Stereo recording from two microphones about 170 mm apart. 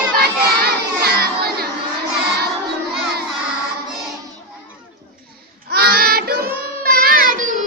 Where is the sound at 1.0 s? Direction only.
65° right (ahead or behind).